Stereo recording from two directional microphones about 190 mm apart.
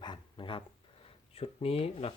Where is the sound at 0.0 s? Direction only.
25° left (ahead or behind).